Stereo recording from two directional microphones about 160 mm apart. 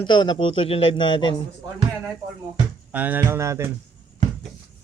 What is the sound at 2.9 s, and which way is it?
Speech, 10° right (ahead or behind).